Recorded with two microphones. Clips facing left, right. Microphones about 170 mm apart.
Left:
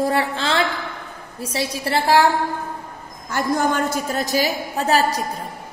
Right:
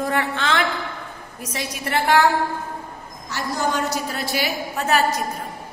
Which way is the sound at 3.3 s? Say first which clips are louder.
Left 4 dB; 55° left (ahead or behind).